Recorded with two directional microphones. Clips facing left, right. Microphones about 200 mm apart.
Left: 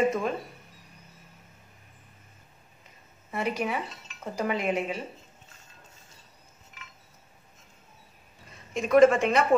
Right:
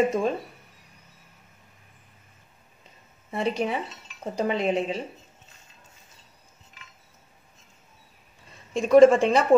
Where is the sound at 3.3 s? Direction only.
30° right (ahead or behind).